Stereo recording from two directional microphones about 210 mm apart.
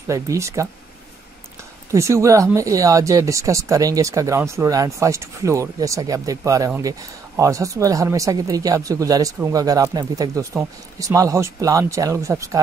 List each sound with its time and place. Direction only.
0.1 s speech: 15° right (ahead or behind)
1.9 s speech: 15° right (ahead or behind)